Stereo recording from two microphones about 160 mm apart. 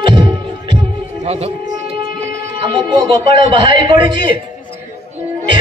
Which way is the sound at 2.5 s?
30° right (ahead or behind).